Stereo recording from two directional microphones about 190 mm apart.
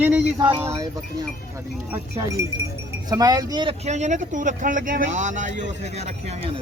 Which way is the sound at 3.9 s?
40° right (ahead or behind).